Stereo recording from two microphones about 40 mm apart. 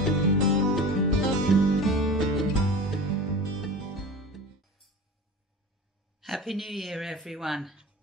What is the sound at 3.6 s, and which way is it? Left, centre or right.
Music, centre.